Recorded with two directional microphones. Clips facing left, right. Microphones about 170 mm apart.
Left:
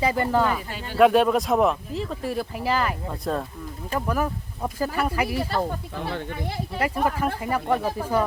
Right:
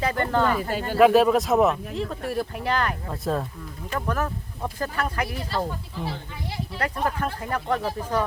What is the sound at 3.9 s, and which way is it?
Speech, 10° left (ahead or behind).